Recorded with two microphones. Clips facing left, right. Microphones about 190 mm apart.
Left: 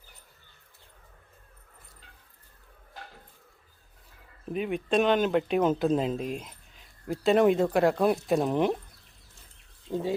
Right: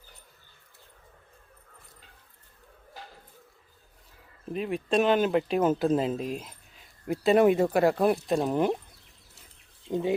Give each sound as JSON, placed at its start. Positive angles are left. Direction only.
{"t": 4.5, "sound": "speech", "side_deg": 0}
{"t": 9.9, "sound": "speech", "side_deg": -20}